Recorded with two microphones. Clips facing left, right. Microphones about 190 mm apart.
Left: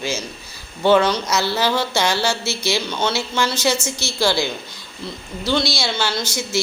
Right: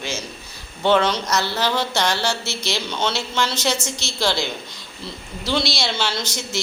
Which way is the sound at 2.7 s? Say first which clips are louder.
Left 1 dB; centre (ahead or behind).